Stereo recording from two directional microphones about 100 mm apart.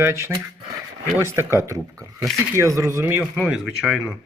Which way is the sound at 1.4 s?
25° right (ahead or behind).